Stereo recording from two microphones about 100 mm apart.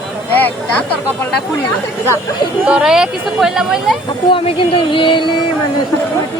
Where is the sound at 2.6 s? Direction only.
5° right (ahead or behind).